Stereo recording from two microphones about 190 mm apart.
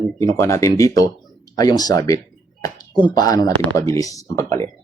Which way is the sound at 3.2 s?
20° left (ahead or behind).